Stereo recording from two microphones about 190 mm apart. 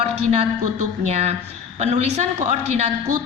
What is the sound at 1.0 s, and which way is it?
A woman's voice, 35° right (ahead or behind).